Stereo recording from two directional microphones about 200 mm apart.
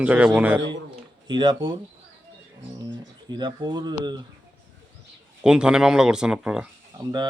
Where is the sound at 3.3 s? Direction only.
25° right (ahead or behind).